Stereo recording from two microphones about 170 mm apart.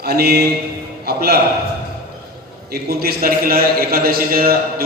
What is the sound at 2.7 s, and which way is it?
A man's voice, 65° right (ahead or behind).